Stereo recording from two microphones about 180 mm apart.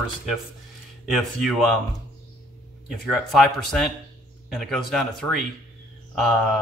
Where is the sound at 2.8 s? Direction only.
Centre (ahead or behind).